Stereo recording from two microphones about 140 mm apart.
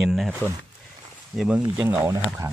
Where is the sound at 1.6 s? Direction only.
15° right (ahead or behind).